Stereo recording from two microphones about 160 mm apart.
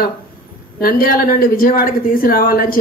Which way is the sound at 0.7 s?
65° left (ahead or behind).